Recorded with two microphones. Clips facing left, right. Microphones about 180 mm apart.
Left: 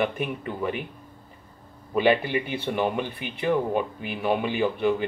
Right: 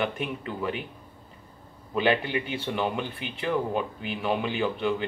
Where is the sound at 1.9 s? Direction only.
5° left (ahead or behind).